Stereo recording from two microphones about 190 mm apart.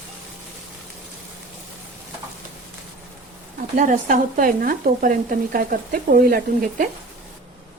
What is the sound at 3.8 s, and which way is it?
Speech, 45° right (ahead or behind).